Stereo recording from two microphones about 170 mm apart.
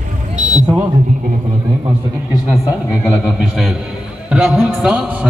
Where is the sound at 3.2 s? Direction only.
Centre (ahead or behind).